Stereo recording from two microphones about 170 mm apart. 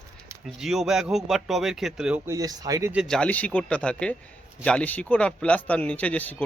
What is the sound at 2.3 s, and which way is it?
Speech, 20° right (ahead or behind).